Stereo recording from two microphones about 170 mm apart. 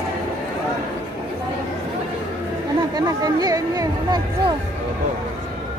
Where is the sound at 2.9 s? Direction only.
20° right (ahead or behind).